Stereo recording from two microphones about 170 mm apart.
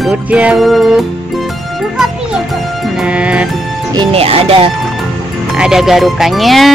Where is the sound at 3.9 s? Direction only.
35° right (ahead or behind).